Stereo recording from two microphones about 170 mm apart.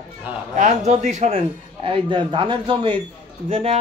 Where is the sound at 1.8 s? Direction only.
30° right (ahead or behind).